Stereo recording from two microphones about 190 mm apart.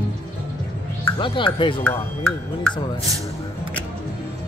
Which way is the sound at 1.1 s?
25° left (ahead or behind).